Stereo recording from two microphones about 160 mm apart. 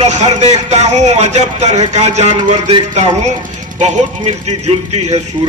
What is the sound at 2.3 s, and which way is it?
A man's voice, 30° right (ahead or behind).